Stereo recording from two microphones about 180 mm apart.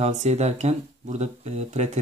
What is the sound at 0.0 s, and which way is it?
Speech, 40° right (ahead or behind).